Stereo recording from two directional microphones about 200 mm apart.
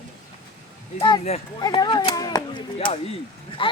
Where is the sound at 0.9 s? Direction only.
25° left (ahead or behind).